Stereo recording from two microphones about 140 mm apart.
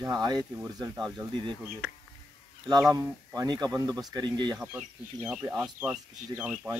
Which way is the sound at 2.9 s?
20° right (ahead or behind).